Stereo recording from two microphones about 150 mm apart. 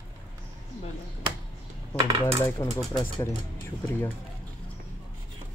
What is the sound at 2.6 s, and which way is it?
Speech, 20° left (ahead or behind).